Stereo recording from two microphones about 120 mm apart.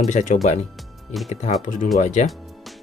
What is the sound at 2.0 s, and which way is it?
Speech, 85° left.